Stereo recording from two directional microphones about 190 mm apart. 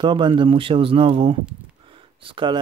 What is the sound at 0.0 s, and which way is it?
Speech, 25° right (ahead or behind).